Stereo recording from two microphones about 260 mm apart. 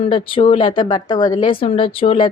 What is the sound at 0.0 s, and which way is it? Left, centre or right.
A woman's voice, left.